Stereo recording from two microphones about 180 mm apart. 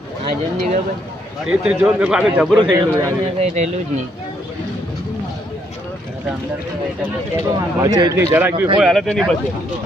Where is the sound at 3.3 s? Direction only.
40° right (ahead or behind).